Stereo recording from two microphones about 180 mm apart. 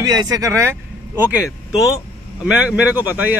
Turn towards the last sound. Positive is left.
turn(degrees=-10)  # may be behind; listen again after turning